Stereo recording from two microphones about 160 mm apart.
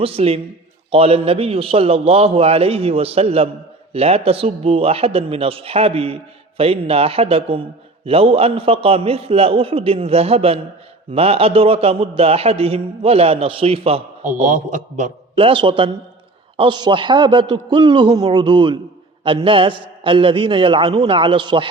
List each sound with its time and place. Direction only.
0.0 s a man's voice: 35° right (ahead or behind)
14.4 s a man's voice: 50° right (ahead or behind)
15.4 s a man's voice: 35° right (ahead or behind)